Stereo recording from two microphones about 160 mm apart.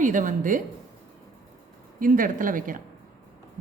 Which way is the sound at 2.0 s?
60° right (ahead or behind).